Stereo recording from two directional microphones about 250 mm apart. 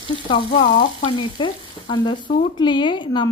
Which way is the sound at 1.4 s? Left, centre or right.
Centre.